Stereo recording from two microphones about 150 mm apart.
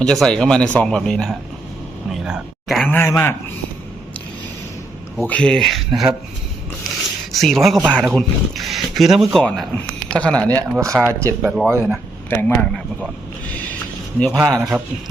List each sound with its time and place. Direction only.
0.0 s speech: 5° left (ahead or behind)
2.9 s speech: 15° left (ahead or behind)
5.2 s speech: 10° left (ahead or behind)
7.3 s speech: centre (ahead or behind)
10.5 s speech: 20° right (ahead or behind)
11.4 s speech: 5° right (ahead or behind)
12.3 s speech: 15° left (ahead or behind)
14.3 s speech: centre (ahead or behind)